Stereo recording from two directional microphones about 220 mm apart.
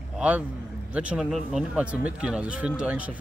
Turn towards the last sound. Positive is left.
turn(degrees=-5)  # may be behind; listen again after turning